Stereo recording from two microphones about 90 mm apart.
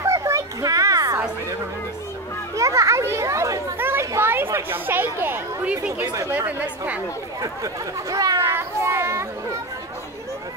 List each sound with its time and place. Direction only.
0.0 s a sound: 35° right (ahead or behind)
2.5 s children playing: 35° right (ahead or behind)
3.7 s children playing: 25° right (ahead or behind)
5.7 s chatter: 15° right (ahead or behind)
6.3 s speech: 15° right (ahead or behind)
7.6 s speech: 45° right (ahead or behind)
8.4 s a sound: 30° right (ahead or behind)